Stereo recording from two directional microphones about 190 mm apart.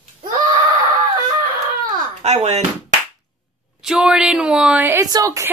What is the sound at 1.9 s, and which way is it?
Bouncing, 35° right (ahead or behind).